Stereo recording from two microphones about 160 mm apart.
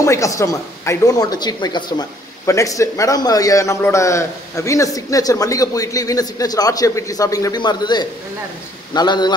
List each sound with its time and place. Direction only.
0.0 s a woman's voice: 20° left (ahead or behind)